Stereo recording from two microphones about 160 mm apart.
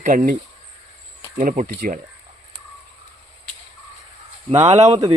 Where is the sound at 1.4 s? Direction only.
55° right (ahead or behind).